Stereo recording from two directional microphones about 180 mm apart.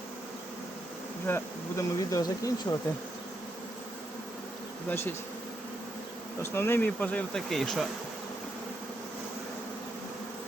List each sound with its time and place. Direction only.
1.3 s speech: 15° left (ahead or behind)
4.9 s speech: 10° left (ahead or behind)
6.4 s speech: 15° left (ahead or behind)